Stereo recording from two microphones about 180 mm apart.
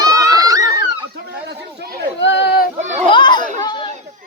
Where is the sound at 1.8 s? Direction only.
60° right (ahead or behind).